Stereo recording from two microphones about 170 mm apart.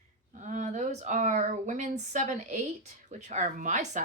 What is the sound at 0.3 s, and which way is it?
Speech, 45° right (ahead or behind).